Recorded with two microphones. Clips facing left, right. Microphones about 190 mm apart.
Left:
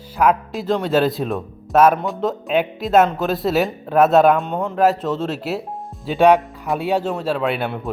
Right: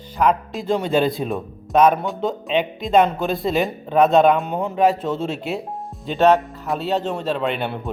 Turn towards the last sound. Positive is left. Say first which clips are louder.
# left 2 dB
turn(degrees=5)  # may be behind; listen again after turning